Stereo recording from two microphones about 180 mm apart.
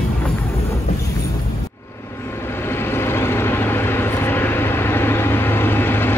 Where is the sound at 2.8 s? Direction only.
15° left (ahead or behind).